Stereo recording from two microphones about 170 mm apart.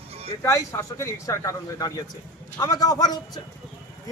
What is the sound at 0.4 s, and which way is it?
A man's voice, 15° left (ahead or behind).